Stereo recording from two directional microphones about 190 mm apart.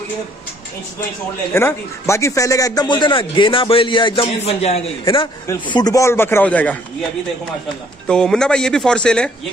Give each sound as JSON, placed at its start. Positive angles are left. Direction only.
{"t": 1.5, "sound": "a man's voice", "side_deg": 15}
{"t": 8.1, "sound": "speech", "side_deg": 5}